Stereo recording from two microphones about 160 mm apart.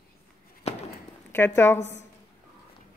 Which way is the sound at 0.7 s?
40° left (ahead or behind).